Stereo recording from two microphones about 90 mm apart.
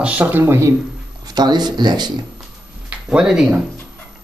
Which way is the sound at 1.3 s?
50° right (ahead or behind).